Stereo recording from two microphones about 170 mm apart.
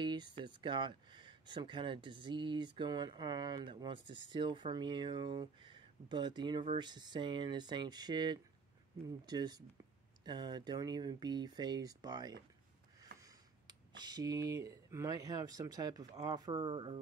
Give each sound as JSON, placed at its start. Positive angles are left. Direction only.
{"t": 0.0, "sound": "speech", "side_deg": -25}